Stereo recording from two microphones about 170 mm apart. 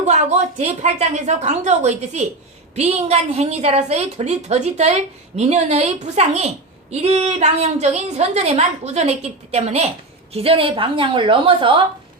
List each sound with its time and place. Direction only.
0.0 s a woman's voice: 40° right (ahead or behind)